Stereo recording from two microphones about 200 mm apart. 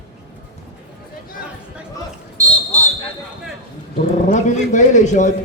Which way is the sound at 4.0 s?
40° left (ahead or behind).